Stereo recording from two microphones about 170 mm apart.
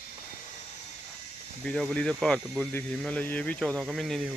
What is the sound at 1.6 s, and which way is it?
Speech, 5° left (ahead or behind).